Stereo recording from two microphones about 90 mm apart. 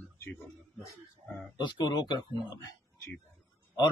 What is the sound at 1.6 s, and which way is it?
Speech, 55° left (ahead or behind).